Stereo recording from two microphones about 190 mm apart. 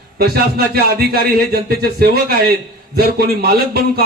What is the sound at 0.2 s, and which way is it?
A man's voice, 55° right (ahead or behind).